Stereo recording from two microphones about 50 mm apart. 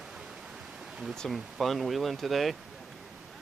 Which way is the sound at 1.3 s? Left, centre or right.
Centre.